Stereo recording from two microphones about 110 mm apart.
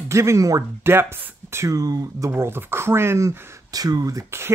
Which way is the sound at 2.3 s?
20° right (ahead or behind).